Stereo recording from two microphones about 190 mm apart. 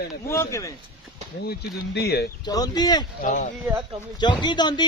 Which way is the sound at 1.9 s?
55° left (ahead or behind).